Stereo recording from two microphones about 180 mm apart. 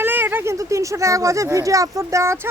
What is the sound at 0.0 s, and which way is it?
Speech, 10° right (ahead or behind).